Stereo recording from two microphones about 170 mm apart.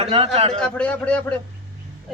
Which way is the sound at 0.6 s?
5° left (ahead or behind).